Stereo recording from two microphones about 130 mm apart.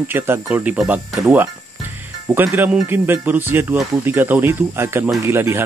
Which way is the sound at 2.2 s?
20° right (ahead or behind).